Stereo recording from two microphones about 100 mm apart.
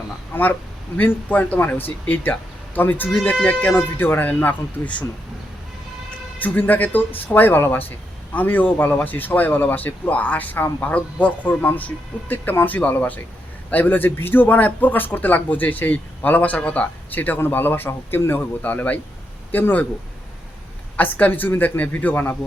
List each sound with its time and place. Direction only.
0.3 s speech: 20° left (ahead or behind)
6.4 s speech: 15° left (ahead or behind)
20.9 s speech: 15° left (ahead or behind)